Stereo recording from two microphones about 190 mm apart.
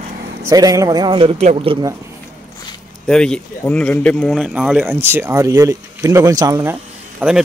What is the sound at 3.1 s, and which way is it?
Speech, 5° left (ahead or behind).